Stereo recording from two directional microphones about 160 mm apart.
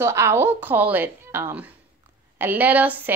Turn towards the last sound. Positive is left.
turn(degrees=-10)  # may be behind; listen again after turning